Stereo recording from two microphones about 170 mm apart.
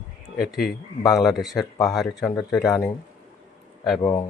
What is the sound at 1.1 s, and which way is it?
Speech, centre (ahead or behind).